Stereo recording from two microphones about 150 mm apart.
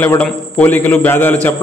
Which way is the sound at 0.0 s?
10° left (ahead or behind).